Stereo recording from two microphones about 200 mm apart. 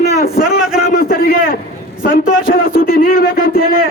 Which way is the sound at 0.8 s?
45° left (ahead or behind).